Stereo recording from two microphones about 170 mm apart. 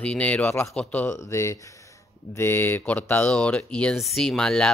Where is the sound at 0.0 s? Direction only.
5° left (ahead or behind).